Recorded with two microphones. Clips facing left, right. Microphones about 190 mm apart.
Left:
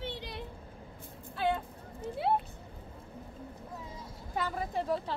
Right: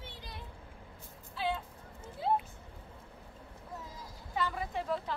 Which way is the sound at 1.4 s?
50° left (ahead or behind).